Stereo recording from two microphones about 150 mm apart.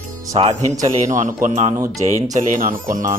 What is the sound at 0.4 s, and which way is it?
Speech, 35° right (ahead or behind).